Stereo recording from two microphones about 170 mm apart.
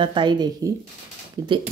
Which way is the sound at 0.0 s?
30° right (ahead or behind).